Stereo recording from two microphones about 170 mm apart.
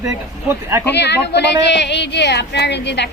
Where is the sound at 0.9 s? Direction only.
85° left.